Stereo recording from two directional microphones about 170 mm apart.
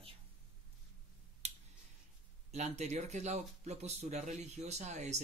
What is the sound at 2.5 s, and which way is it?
Speech, 40° right (ahead or behind).